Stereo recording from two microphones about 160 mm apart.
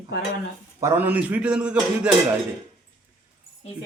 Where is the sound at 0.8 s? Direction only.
15° right (ahead or behind).